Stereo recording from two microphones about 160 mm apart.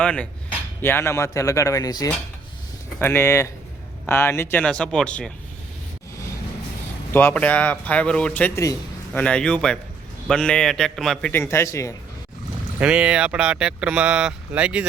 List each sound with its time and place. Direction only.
0.0 s speech: 5° left (ahead or behind)
7.1 s a man's voice: 15° left (ahead or behind)
11.3 s speech: 15° left (ahead or behind)
12.8 s speech: 5° right (ahead or behind)